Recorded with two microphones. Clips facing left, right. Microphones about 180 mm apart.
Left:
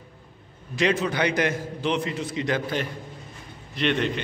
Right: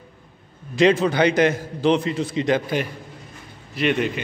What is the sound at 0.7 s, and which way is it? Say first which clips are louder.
A man's voice: right 6 dB; 30° right (ahead or behind).